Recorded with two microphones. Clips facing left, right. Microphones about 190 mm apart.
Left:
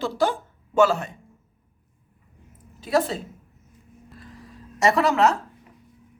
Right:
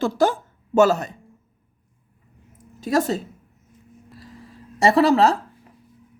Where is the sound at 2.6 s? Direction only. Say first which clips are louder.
Right 1 dB; 45° right (ahead or behind).